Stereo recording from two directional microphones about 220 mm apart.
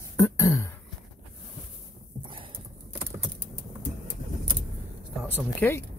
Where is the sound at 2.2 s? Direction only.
25° right (ahead or behind).